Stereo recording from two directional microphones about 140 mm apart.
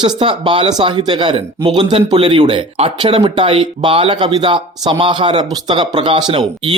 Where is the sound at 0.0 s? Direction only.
35° right (ahead or behind).